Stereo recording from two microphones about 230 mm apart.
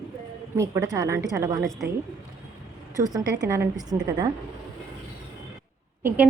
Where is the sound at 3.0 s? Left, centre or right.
Centre.